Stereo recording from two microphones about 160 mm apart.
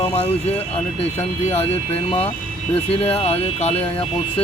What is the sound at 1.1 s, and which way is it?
Speech, 40° left (ahead or behind).